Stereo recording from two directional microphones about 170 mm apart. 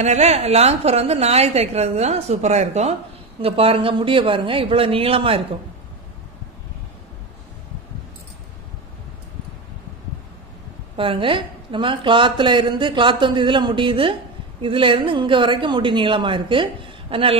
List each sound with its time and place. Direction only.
0.0 s a woman's voice: 40° right (ahead or behind)
11.0 s a woman's voice: 30° right (ahead or behind)